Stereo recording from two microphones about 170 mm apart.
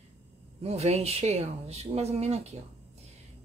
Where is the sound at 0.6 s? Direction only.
40° right (ahead or behind).